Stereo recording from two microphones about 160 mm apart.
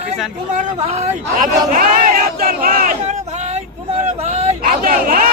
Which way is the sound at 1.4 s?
55° right (ahead or behind).